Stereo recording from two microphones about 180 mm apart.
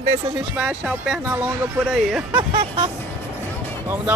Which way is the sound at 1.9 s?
5° right (ahead or behind).